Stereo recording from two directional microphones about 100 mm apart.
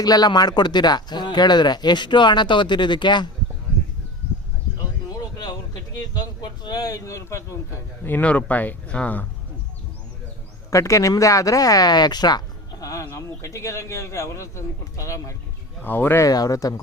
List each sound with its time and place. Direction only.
0.0 s speech: 40° left (ahead or behind)
5.0 s speech: 40° left (ahead or behind)
8.0 s speech: 15° left (ahead or behind)
10.7 s speech: 30° left (ahead or behind)
12.8 s speech: 30° left (ahead or behind)
15.8 s speech: 20° left (ahead or behind)
16.2 s speech: 40° left (ahead or behind)